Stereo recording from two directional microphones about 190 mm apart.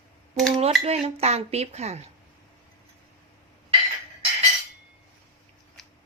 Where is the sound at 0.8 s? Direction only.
35° right (ahead or behind).